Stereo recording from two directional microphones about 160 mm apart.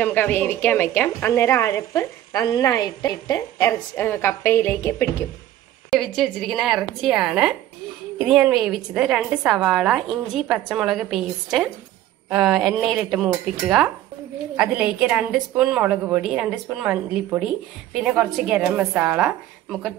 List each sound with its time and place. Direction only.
0.0 s a woman's voice: 15° left (ahead or behind)
5.9 s a woman's voice: centre (ahead or behind)